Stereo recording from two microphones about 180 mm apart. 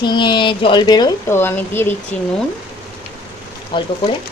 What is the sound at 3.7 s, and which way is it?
Speech, 25° left (ahead or behind).